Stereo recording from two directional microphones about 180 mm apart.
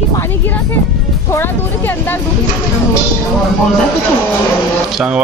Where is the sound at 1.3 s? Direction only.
10° left (ahead or behind).